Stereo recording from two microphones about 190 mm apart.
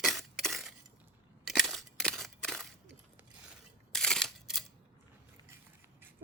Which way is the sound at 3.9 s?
5° left (ahead or behind).